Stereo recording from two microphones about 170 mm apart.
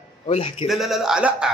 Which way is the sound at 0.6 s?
Centre (ahead or behind).